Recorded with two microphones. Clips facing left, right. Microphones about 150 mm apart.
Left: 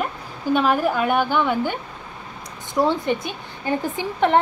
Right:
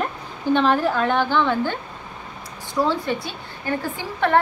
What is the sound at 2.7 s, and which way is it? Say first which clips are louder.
A woman's voice: left 2 dB; 20° left (ahead or behind).